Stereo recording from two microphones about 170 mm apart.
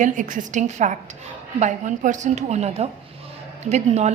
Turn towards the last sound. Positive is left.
turn(degrees=-40)  # may be behind; listen again after turning